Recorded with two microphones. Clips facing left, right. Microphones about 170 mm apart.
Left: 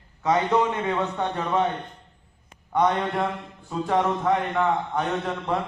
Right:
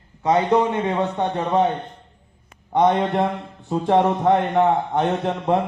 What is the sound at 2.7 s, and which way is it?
A man's voice, 30° right (ahead or behind).